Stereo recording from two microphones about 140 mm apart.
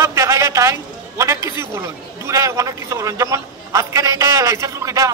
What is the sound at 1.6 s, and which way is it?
A man's voice, 20° right (ahead or behind).